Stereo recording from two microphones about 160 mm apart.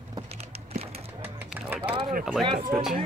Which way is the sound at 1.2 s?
10° right (ahead or behind).